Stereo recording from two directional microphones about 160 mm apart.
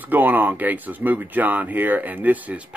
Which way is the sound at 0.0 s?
10° right (ahead or behind).